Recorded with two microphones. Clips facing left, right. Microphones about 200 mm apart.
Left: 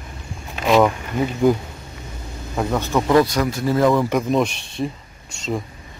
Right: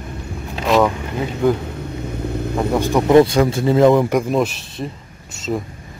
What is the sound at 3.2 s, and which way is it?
Speech, 25° right (ahead or behind).